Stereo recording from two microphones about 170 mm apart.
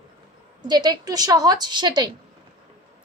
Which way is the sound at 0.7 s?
25° right (ahead or behind).